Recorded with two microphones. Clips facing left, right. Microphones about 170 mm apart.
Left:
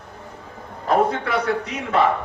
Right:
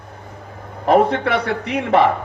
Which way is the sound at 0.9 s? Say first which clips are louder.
Right 5 dB; 65° right (ahead or behind).